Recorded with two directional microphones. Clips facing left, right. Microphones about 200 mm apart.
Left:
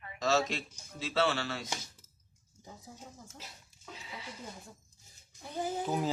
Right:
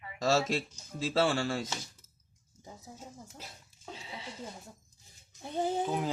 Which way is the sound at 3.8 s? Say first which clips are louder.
Right 3 dB; 30° right (ahead or behind).